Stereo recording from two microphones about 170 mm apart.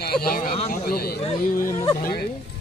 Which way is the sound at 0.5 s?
40° left (ahead or behind).